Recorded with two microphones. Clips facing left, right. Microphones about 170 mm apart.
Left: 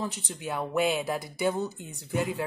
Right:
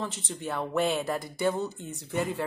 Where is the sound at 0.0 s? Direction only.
5° left (ahead or behind).